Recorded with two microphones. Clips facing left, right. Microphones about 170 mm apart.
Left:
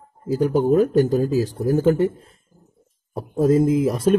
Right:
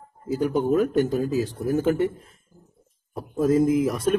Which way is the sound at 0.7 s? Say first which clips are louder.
Left 5 dB; 40° left (ahead or behind).